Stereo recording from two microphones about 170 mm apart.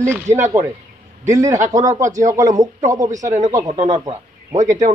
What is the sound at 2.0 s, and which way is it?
Speech, 45° right (ahead or behind).